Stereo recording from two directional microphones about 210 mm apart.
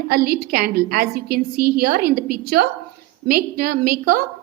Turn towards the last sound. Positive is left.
turn(degrees=-45)  # may be behind; listen again after turning